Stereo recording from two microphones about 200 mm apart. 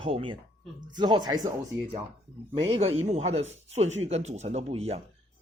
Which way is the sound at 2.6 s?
30° right (ahead or behind).